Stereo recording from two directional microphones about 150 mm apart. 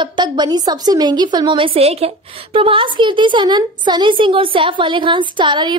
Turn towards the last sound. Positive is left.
turn(degrees=-30)  # may be behind; listen again after turning